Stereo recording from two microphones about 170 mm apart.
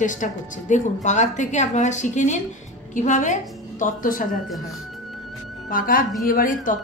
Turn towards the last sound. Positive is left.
turn(degrees=50)  # may be behind; listen again after turning